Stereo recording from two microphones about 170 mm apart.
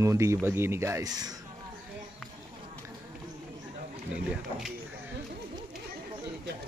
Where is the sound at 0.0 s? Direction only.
15° right (ahead or behind).